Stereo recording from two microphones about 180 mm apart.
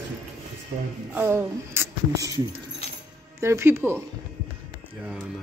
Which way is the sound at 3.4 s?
15° right (ahead or behind).